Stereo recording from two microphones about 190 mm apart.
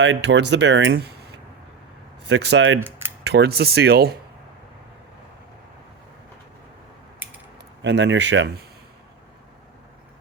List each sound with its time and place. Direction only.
0.0 s speech: 70° right (ahead or behind)
3.2 s speech: 60° right (ahead or behind)
7.2 s typing: 10° right (ahead or behind)
7.8 s speech: 70° right (ahead or behind)